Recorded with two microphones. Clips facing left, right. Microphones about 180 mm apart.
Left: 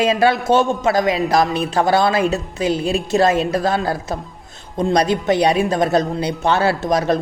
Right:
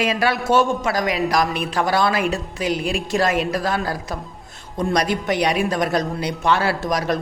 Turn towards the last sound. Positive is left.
turn(degrees=25)  # may be behind; listen again after turning